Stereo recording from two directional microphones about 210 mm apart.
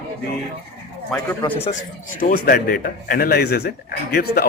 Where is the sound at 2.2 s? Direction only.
45° left (ahead or behind).